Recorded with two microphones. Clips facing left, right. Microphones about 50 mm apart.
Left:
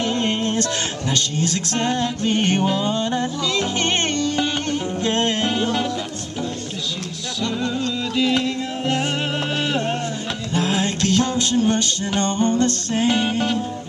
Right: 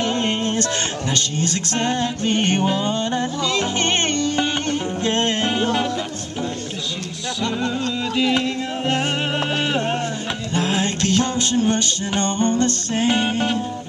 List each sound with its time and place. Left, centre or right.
0.0 s music: centre
2.6 s music: centre
2.9 s music: centre
5.4 s music: centre
8.2 s music: centre
10.5 s music: centre
13.1 s music: centre